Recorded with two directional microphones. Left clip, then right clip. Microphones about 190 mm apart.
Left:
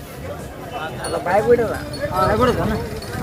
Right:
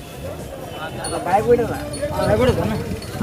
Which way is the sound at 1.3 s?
15° left (ahead or behind).